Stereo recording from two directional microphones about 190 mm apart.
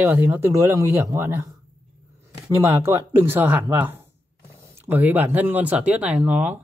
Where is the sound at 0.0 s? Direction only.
10° right (ahead or behind).